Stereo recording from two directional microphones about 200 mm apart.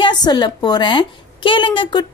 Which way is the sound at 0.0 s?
20° left (ahead or behind).